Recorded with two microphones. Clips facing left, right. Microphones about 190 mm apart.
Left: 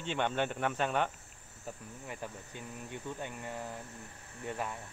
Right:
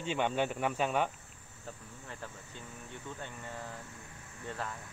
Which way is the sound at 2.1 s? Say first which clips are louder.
Left 3 dB; 15° left (ahead or behind).